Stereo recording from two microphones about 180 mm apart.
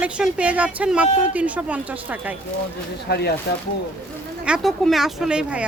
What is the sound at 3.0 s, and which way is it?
Speech, 65° left (ahead or behind).